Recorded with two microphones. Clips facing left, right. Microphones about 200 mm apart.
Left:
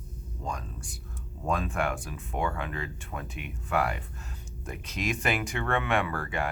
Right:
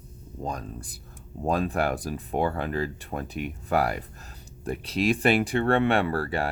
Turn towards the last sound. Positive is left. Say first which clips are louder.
# right 4 dB
turn(degrees=-35)  # may be behind; listen again after turning